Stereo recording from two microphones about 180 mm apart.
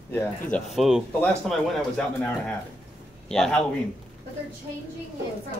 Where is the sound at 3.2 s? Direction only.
5° left (ahead or behind).